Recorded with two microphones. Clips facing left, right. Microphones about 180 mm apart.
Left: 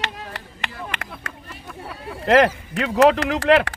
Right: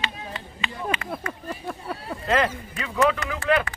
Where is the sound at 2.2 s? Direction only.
80° left.